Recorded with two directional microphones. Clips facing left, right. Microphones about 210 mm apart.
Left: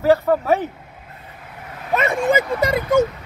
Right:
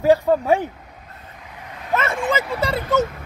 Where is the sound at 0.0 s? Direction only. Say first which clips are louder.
Even; 15° right (ahead or behind).